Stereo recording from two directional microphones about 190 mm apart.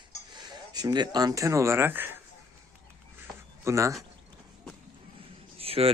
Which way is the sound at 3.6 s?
15° right (ahead or behind).